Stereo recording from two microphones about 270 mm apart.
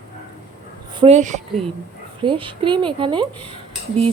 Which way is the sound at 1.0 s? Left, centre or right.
Right.